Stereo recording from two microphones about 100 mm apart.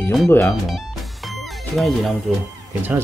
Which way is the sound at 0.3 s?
20° left (ahead or behind).